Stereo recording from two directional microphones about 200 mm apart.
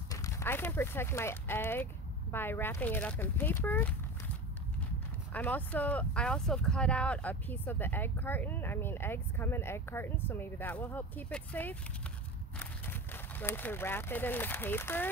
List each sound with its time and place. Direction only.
0.1 s speech: 15° left (ahead or behind)
5.3 s speech: 10° left (ahead or behind)